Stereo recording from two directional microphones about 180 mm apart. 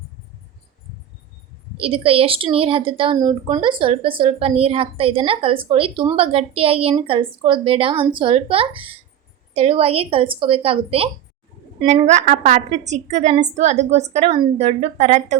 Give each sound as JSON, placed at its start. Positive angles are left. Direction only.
{"t": 1.7, "sound": "a woman's voice", "side_deg": -30}